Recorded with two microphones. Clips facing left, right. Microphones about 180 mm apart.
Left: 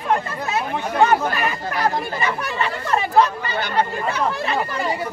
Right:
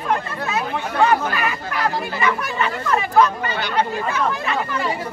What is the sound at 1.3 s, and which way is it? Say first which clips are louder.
Speech: left 1 dB; 35° left (ahead or behind).